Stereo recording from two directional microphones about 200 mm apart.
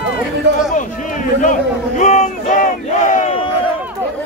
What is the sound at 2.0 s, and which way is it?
Battle cry, 35° left (ahead or behind).